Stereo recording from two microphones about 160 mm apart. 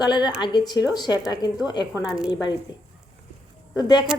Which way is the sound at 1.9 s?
5° right (ahead or behind).